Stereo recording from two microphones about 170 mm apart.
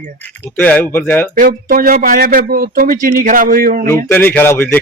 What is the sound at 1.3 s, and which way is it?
Speech, 55° right (ahead or behind).